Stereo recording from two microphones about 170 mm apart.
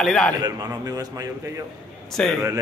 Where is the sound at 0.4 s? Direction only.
20° right (ahead or behind).